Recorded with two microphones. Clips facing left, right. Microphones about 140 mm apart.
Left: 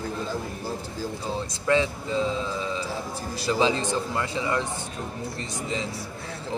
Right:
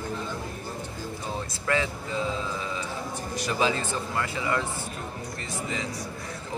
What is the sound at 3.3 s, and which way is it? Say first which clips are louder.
Speech: left 3 dB; 30° left (ahead or behind).